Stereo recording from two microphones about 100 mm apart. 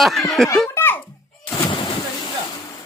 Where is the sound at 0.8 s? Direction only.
20° left (ahead or behind).